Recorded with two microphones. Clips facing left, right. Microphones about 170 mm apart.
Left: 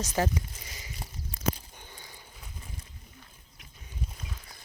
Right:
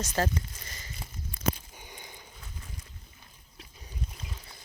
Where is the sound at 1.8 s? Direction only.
15° right (ahead or behind).